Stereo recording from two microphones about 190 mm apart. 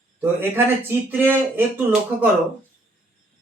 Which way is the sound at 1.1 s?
10° right (ahead or behind).